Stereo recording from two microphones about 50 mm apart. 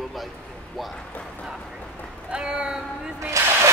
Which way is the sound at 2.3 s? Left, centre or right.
Centre.